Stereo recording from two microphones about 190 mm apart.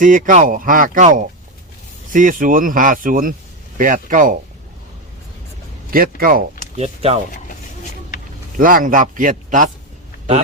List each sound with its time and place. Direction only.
0.0 s speech: 45° right (ahead or behind)
5.9 s speech: 50° right (ahead or behind)
6.7 s speech: 35° right (ahead or behind)
8.5 s speech: 45° right (ahead or behind)